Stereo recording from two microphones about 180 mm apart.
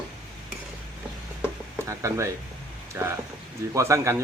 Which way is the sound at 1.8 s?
15° right (ahead or behind).